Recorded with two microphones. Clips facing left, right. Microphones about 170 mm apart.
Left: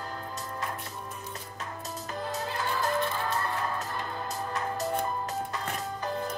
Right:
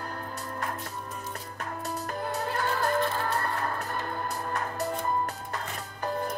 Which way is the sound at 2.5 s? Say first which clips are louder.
Right 2 dB; 60° right (ahead or behind).